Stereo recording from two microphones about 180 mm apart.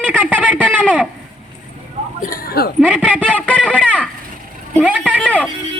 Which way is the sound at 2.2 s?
55° left (ahead or behind).